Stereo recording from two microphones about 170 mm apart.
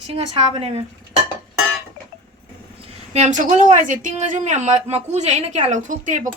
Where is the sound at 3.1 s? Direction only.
45° right (ahead or behind).